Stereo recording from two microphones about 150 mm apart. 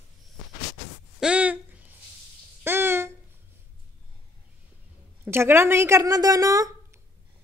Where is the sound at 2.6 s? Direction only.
15° right (ahead or behind).